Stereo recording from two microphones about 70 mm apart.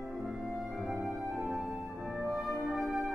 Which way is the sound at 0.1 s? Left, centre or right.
Centre.